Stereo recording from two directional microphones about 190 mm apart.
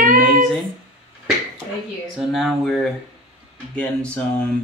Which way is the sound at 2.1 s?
Centre (ahead or behind).